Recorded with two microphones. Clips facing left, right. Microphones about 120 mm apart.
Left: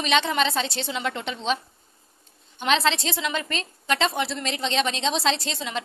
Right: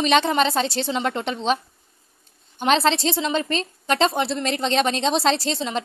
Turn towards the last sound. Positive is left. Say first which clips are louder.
# right 4 dB
turn(degrees=-35)  # may be behind; listen again after turning